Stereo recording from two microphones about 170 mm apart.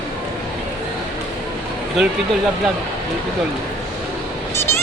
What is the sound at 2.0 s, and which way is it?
Speech, centre (ahead or behind).